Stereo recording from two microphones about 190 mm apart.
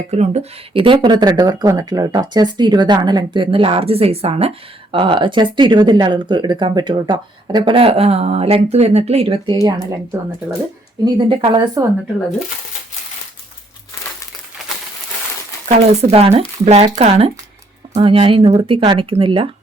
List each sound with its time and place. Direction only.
0.1 s speech: 35° right (ahead or behind)
9.6 s speech: 15° right (ahead or behind)
11.0 s speech: 25° right (ahead or behind)
15.8 s speech: 35° right (ahead or behind)